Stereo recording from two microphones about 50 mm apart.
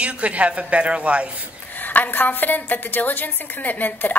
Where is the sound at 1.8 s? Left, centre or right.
Left.